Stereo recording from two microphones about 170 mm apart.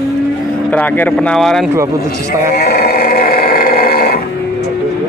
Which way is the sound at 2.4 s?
60° left (ahead or behind).